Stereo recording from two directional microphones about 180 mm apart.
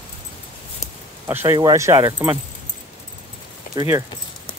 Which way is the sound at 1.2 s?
15° right (ahead or behind).